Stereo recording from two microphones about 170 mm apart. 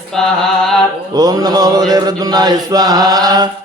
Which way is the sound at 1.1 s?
20° right (ahead or behind).